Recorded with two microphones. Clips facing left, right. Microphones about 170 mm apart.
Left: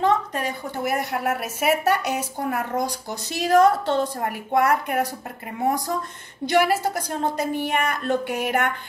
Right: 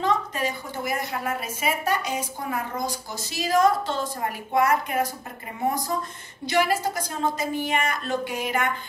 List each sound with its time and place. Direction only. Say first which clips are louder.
0.0 s a woman's voice: left 3 dB; 60° left (ahead or behind)
6.4 s a woman's voice: left 3 dB; 60° left (ahead or behind)